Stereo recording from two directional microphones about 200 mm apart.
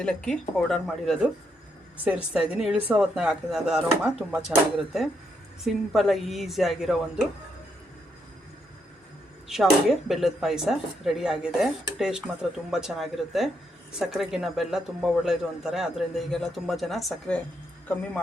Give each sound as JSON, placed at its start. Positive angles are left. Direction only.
{"t": 0.0, "sound": "speech", "side_deg": 5}
{"t": 9.5, "sound": "speech", "side_deg": 0}